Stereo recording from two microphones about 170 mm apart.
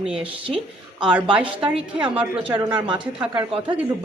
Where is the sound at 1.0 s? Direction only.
5° right (ahead or behind).